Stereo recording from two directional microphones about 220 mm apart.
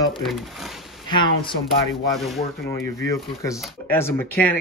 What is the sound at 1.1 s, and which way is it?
Speech, 20° left (ahead or behind).